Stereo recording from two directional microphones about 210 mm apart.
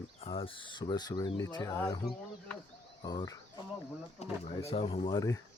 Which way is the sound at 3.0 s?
20° left (ahead or behind).